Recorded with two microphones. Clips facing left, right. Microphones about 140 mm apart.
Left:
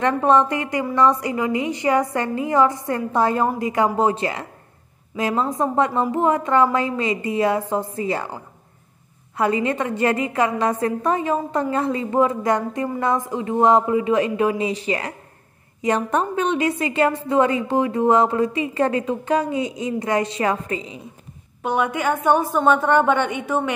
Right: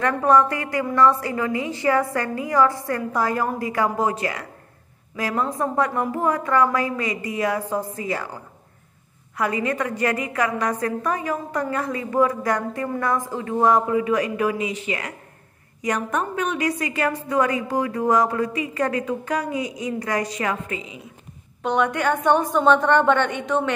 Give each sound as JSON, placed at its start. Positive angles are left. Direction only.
{"t": 0.0, "sound": "a woman's voice", "side_deg": 20}
{"t": 9.4, "sound": "a woman's voice", "side_deg": 25}
{"t": 21.6, "sound": "a woman's voice", "side_deg": 10}